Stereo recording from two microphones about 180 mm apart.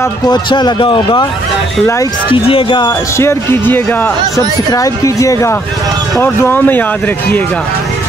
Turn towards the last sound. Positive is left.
turn(degrees=10)  # may be behind; listen again after turning